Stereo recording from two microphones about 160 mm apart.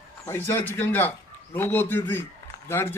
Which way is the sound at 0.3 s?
15° left (ahead or behind).